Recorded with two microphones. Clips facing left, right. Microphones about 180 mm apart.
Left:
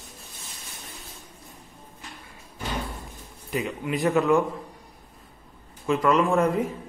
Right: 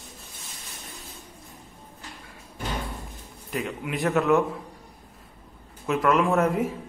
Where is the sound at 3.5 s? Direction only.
Centre (ahead or behind).